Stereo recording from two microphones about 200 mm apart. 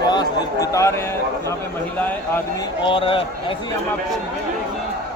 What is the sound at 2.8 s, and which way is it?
Speech, 25° left (ahead or behind).